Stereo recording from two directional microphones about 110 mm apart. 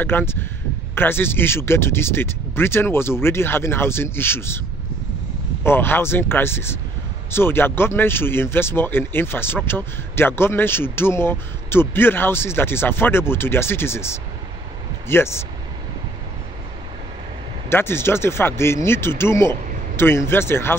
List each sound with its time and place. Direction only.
0.0 s speech: 20° left (ahead or behind)
5.6 s speech: 20° left (ahead or behind)
15.0 s speech: 20° left (ahead or behind)
17.6 s speech: 20° left (ahead or behind)